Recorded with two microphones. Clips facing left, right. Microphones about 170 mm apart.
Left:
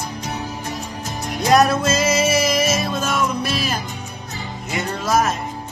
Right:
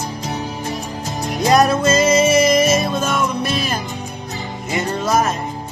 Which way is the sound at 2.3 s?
50° right (ahead or behind).